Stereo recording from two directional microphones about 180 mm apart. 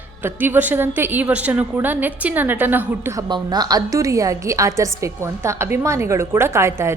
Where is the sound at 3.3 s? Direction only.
20° right (ahead or behind).